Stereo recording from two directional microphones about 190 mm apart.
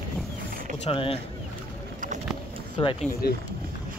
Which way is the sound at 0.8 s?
30° left (ahead or behind).